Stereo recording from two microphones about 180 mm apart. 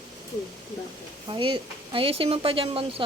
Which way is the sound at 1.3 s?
25° right (ahead or behind).